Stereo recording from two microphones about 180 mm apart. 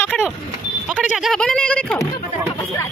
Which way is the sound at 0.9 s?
Centre (ahead or behind).